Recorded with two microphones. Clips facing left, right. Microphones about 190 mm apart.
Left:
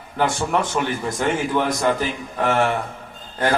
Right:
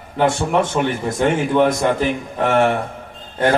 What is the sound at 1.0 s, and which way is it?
Speech, 25° right (ahead or behind).